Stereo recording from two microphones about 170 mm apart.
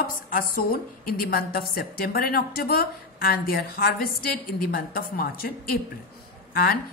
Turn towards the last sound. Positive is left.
turn(degrees=65)  # may be behind; listen again after turning